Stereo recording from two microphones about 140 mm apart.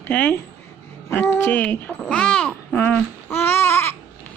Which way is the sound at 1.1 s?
15° left (ahead or behind).